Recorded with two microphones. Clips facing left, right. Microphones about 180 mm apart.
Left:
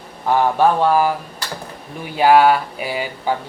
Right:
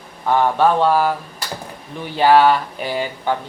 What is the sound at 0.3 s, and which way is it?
Speech, 10° left (ahead or behind).